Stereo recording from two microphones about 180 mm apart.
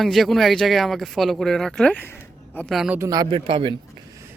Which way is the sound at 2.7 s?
Centre (ahead or behind).